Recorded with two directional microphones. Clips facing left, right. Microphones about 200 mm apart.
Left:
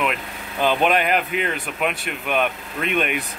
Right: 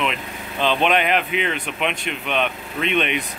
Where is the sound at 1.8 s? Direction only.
10° left (ahead or behind).